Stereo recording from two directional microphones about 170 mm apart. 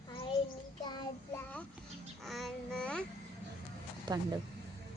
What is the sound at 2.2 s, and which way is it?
Babbling, centre (ahead or behind).